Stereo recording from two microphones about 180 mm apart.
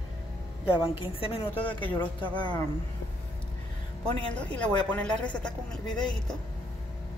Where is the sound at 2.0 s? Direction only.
10° left (ahead or behind).